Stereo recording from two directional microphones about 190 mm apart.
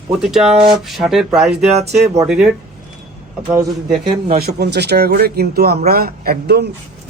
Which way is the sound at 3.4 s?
20° right (ahead or behind).